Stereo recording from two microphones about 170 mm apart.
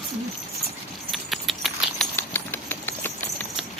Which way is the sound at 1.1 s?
Centre (ahead or behind).